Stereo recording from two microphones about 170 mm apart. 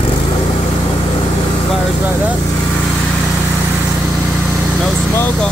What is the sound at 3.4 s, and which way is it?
Vehicle, 15° right (ahead or behind).